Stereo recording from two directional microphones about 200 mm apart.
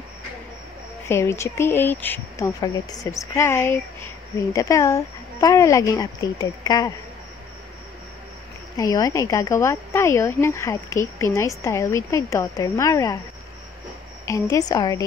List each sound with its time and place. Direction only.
1.0 s speech: 15° left (ahead or behind)
8.7 s speech: 15° left (ahead or behind)
14.2 s speech: 15° left (ahead or behind)